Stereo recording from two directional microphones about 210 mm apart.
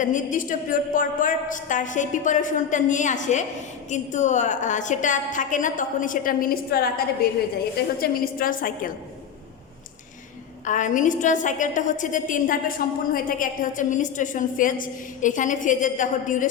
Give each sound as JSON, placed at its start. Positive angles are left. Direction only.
{"t": 0.0, "sound": "a woman's voice", "side_deg": 35}
{"t": 10.7, "sound": "a woman's voice", "side_deg": 35}